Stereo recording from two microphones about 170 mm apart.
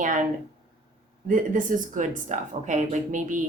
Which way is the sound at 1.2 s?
50° right (ahead or behind).